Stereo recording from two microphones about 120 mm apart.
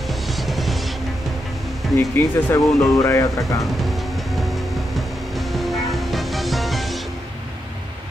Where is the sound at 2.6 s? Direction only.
Centre (ahead or behind).